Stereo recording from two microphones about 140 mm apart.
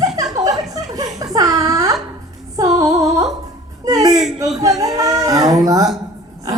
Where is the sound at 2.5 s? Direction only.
25° right (ahead or behind).